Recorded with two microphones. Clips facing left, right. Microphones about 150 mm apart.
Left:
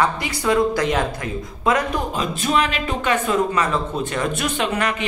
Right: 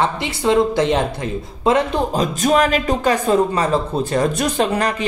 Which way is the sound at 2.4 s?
40° right (ahead or behind).